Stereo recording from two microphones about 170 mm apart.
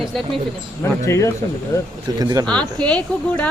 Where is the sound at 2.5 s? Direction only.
5° left (ahead or behind).